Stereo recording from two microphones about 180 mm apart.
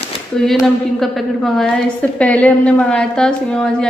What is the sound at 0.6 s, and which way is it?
A woman's voice, centre (ahead or behind).